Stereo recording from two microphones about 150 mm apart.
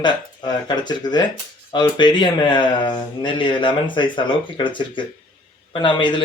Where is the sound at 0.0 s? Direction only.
30° left (ahead or behind).